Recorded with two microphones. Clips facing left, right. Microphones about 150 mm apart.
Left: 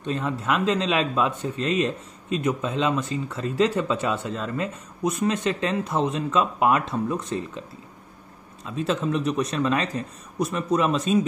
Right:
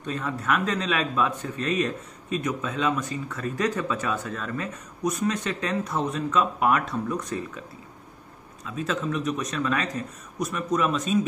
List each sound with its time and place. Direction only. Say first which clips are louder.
0.0 s speech: left 3 dB; 25° left (ahead or behind)
8.6 s speech: left 3 dB; 30° left (ahead or behind)